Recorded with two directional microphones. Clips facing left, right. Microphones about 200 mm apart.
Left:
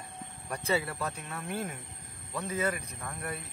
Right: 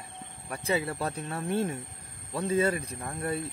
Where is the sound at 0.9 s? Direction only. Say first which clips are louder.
Right 4 dB; 35° right (ahead or behind).